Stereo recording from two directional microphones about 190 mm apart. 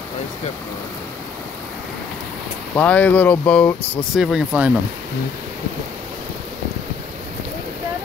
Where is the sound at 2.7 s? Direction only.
5° left (ahead or behind).